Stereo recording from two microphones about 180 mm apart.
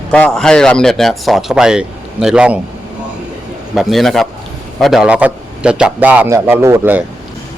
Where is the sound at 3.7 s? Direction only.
Centre (ahead or behind).